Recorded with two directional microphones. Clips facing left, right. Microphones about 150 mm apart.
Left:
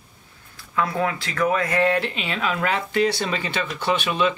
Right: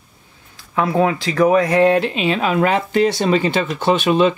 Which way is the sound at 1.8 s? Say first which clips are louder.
Right 7 dB; 20° right (ahead or behind).